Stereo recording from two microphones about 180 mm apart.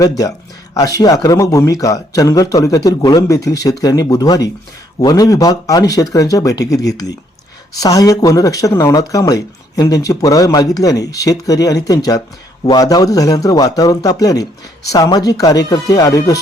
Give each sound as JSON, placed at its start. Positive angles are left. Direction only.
{"t": 0.0, "sound": "speech", "side_deg": 20}